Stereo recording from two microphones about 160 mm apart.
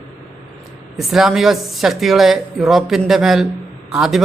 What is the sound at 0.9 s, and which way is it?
A man's voice, centre (ahead or behind).